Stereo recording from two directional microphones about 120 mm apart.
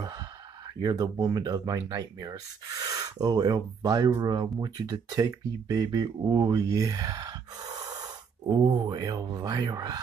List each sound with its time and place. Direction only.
0.7 s speech: 30° right (ahead or behind)